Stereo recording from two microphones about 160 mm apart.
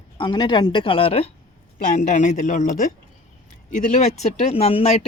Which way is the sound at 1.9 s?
50° left (ahead or behind).